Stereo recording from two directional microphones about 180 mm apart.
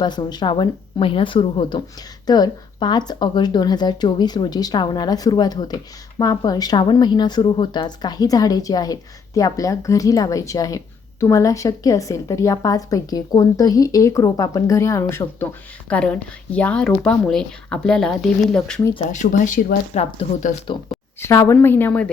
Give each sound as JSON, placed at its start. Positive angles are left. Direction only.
{"t": 0.0, "sound": "speech", "side_deg": 25}
{"t": 19.1, "sound": "speech", "side_deg": 45}
{"t": 21.2, "sound": "a woman's voice", "side_deg": 15}